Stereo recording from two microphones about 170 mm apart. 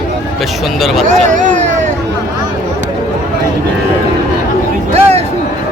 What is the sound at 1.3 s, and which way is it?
Vehicle, 45° right (ahead or behind).